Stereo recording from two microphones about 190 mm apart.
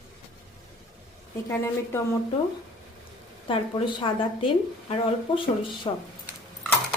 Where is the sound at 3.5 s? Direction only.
25° left (ahead or behind).